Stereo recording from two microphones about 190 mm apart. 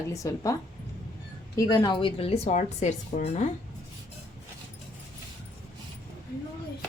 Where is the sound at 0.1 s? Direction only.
15° left (ahead or behind).